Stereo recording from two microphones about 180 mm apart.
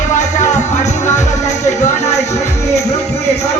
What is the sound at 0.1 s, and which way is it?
Music, 40° left (ahead or behind).